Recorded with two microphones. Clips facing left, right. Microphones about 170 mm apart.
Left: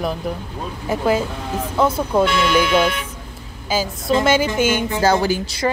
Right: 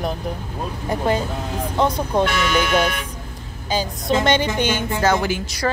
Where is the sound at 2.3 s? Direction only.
50° right (ahead or behind).